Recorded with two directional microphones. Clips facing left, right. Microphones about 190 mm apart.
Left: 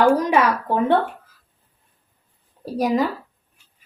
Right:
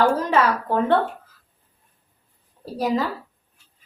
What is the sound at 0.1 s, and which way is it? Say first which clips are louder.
Speech: left 2 dB; 15° left (ahead or behind).